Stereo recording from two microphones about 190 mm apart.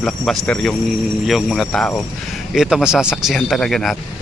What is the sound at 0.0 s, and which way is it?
Speech, 5° left (ahead or behind).